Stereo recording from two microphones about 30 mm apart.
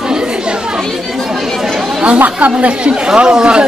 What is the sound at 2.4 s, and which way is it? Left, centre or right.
Speech, right.